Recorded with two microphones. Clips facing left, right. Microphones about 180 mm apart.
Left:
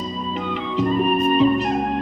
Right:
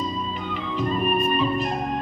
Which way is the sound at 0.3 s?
85° left.